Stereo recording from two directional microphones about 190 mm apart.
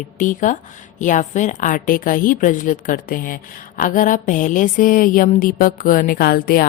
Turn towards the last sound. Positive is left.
turn(degrees=50)  # may be behind; listen again after turning